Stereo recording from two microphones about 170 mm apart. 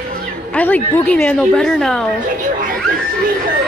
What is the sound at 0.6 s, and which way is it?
A woman's voice, 10° left (ahead or behind).